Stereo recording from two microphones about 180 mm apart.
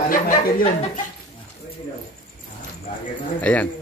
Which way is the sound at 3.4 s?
10° left (ahead or behind).